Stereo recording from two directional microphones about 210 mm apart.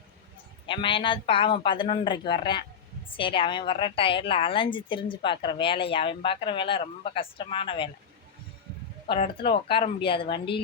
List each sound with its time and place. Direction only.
0.7 s a woman's voice: 25° left (ahead or behind)
9.0 s a woman's voice: 25° left (ahead or behind)